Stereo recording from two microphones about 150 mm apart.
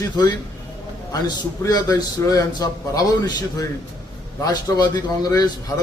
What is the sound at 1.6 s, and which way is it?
Speech, 25° left (ahead or behind).